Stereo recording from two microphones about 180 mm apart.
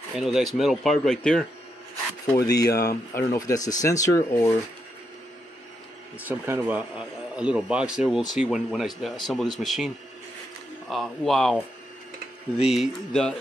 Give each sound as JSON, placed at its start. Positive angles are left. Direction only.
{"t": 0.1, "sound": "speech", "side_deg": 0}
{"t": 2.4, "sound": "speech", "side_deg": 20}
{"t": 2.7, "sound": "speech", "side_deg": 60}
{"t": 3.2, "sound": "speech", "side_deg": 20}
{"t": 6.1, "sound": "speech", "side_deg": -10}
{"t": 10.9, "sound": "speech", "side_deg": 0}